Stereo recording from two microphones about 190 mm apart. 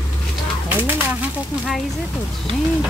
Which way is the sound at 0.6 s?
10° right (ahead or behind).